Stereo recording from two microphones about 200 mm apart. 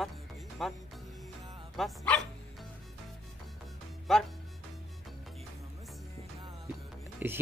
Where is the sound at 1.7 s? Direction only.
5° left (ahead or behind).